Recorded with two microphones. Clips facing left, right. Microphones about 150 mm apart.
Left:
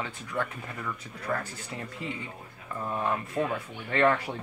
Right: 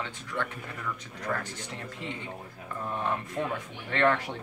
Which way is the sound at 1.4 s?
90° right.